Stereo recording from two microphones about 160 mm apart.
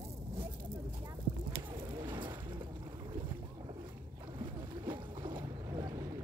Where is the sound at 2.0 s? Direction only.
30° right (ahead or behind).